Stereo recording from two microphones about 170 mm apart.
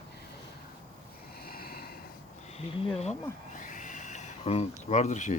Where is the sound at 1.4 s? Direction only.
65° left (ahead or behind).